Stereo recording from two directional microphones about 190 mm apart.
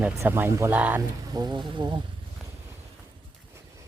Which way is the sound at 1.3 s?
20° right (ahead or behind).